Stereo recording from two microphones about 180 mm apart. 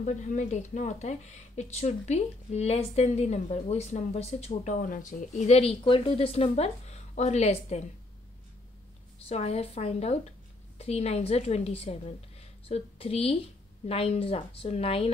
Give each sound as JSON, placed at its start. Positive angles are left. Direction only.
{"t": 0.0, "sound": "speech", "side_deg": 40}
{"t": 9.3, "sound": "a woman's voice", "side_deg": 35}